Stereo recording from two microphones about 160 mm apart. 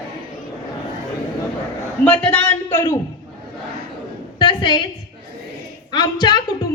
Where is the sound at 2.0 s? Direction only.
10° left (ahead or behind).